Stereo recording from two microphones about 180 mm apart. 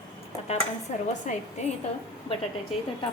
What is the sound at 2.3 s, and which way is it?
Speech, 30° left (ahead or behind).